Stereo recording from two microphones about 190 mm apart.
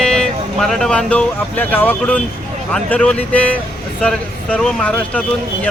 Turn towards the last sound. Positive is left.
turn(degrees=5)  # may be behind; listen again after turning